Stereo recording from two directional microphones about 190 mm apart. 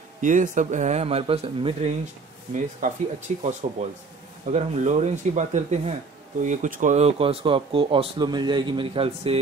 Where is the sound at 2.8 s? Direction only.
45° right (ahead or behind).